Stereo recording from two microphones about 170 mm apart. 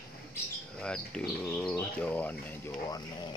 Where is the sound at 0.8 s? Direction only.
5° left (ahead or behind).